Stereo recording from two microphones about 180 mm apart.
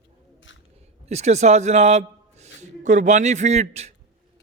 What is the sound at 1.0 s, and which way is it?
A man's voice, 40° right (ahead or behind).